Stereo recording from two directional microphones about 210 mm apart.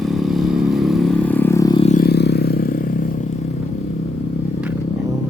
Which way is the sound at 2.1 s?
50° left (ahead or behind).